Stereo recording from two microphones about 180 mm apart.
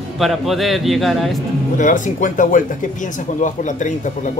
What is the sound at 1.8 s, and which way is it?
Speech, 45° left (ahead or behind).